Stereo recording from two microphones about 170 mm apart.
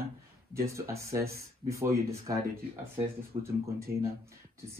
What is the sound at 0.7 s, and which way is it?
Speech, 15° right (ahead or behind).